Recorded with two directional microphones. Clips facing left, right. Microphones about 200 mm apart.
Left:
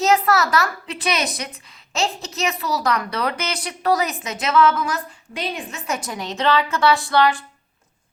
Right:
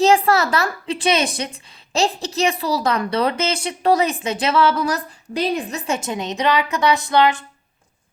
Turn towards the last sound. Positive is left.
turn(degrees=-20)  # may be behind; listen again after turning